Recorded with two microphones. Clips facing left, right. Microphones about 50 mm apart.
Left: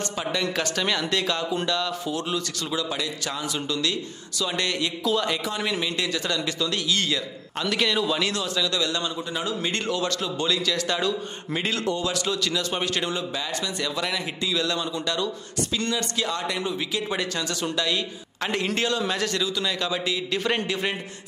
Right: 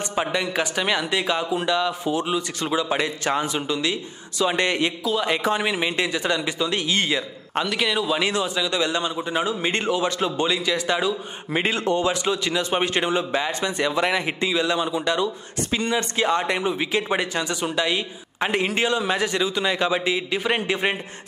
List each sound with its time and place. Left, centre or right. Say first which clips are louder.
0.1 s a man's voice: right 4 dB; right
0.4 s a man's voice: right 2 dB; centre
7.6 s a man's voice: left 1 dB; centre
8.2 s a man's voice: right 3 dB; centre